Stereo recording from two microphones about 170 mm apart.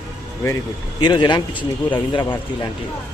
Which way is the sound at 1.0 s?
25° left (ahead or behind).